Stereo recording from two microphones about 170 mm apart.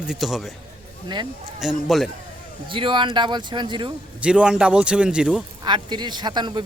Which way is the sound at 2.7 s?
30° right (ahead or behind).